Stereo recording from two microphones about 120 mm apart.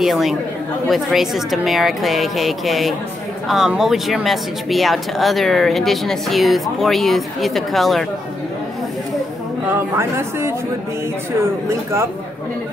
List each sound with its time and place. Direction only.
0.0 s speech: centre (ahead or behind)
9.7 s speech: 20° right (ahead or behind)